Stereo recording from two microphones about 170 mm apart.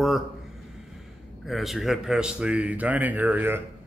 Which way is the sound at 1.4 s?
Centre (ahead or behind).